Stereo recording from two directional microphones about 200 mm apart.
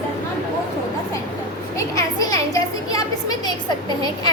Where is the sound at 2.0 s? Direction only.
15° left (ahead or behind).